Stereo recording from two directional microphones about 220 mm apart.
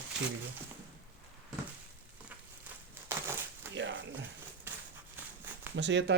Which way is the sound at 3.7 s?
55° right (ahead or behind).